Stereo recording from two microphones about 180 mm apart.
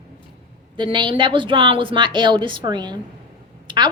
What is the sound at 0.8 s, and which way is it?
A woman's voice, 25° right (ahead or behind).